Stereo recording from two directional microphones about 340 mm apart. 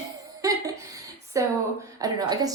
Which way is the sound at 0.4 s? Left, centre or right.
Centre.